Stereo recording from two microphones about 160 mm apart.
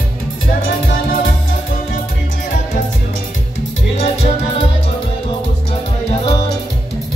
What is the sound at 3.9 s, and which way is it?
Music, 40° left (ahead or behind).